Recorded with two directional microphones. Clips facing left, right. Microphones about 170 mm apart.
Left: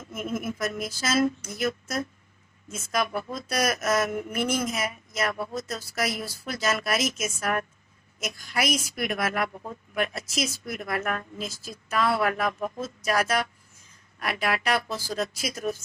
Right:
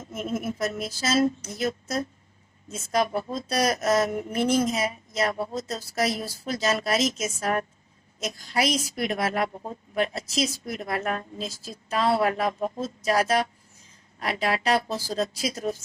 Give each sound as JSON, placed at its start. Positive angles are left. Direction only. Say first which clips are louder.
{"t": 0.0, "sound": "a woman's voice", "louder": "right 1 dB", "side_deg": -30}